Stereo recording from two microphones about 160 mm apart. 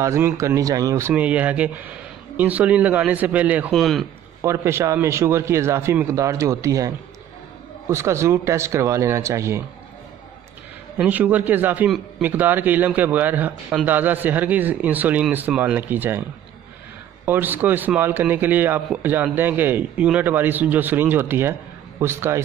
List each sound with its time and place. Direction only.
0.0 s a man's voice: 20° right (ahead or behind); by 4.0 s centre (ahead or behind)
4.4 s a man's voice: 15° right (ahead or behind)
7.9 s a man's voice: 15° right (ahead or behind)
11.0 s a man's voice: 10° right (ahead or behind)
17.3 s a man's voice: 10° right (ahead or behind)